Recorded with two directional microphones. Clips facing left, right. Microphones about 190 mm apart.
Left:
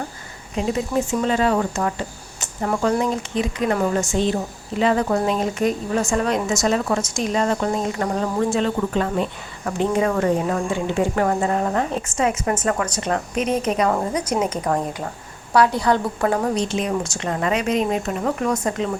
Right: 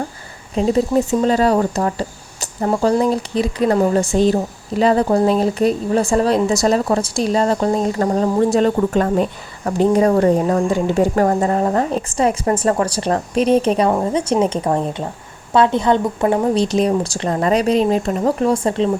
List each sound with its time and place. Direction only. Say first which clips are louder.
0.5 s speech: right 6 dB; 35° right (ahead or behind)
16.6 s speech: right 6 dB; 35° right (ahead or behind)